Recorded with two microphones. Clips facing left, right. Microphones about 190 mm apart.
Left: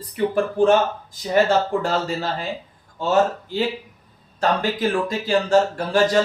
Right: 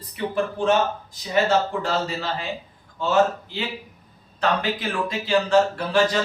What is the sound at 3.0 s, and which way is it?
A man's voice, 40° left (ahead or behind).